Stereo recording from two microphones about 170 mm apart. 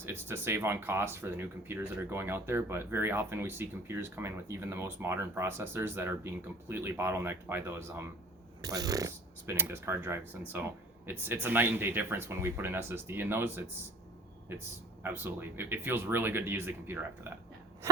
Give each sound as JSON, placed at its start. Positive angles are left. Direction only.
{"t": 0.0, "sound": "speech", "side_deg": -15}
{"t": 15.0, "sound": "speech", "side_deg": -15}